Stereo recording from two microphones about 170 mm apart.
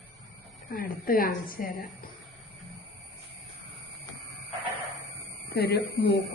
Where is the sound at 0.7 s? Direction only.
60° left (ahead or behind).